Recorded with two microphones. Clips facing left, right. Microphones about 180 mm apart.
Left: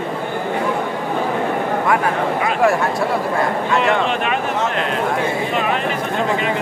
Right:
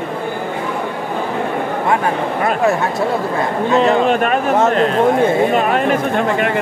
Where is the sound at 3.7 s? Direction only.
35° right (ahead or behind); by 6.5 s 50° right (ahead or behind).